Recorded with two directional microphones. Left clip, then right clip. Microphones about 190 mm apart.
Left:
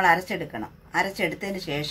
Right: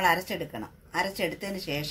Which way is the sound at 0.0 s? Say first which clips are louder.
Left 4 dB; 10° right (ahead or behind).